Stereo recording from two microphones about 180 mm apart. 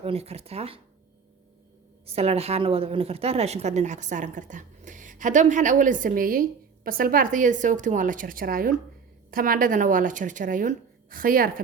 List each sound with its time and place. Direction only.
0.0 s speech: 35° right (ahead or behind)
2.0 s a woman's voice: 35° right (ahead or behind); by 11.6 s 50° right (ahead or behind)